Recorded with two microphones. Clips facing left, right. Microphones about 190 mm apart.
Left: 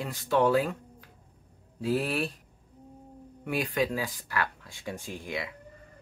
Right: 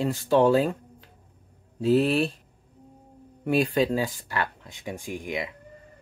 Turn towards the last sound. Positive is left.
turn(degrees=-20)  # may be behind; listen again after turning